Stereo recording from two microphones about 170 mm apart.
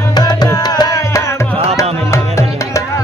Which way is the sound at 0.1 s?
25° left (ahead or behind).